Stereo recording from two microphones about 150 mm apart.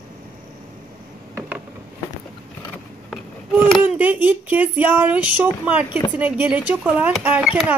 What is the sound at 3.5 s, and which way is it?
Speech, 10° right (ahead or behind).